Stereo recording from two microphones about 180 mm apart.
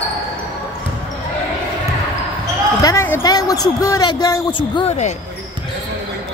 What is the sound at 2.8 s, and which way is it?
A woman's voice, 15° left (ahead or behind).